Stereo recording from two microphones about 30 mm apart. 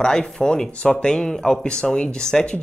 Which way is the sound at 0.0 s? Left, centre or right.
Left.